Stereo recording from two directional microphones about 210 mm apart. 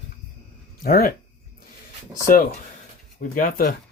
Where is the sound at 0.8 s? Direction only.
45° left (ahead or behind).